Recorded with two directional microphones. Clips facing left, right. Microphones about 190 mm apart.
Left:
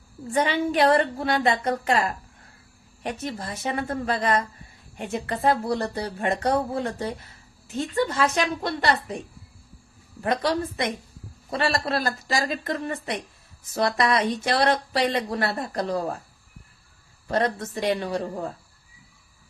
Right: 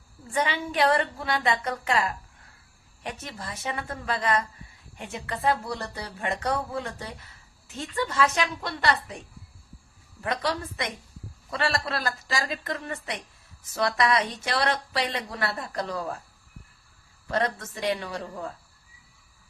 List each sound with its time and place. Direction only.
0.3 s a woman's voice: 40° left (ahead or behind)
10.2 s a woman's voice: 35° left (ahead or behind)
17.3 s a woman's voice: 40° left (ahead or behind)